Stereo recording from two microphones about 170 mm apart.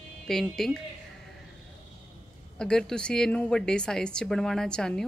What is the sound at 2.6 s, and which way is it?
A woman's voice, 5° left (ahead or behind).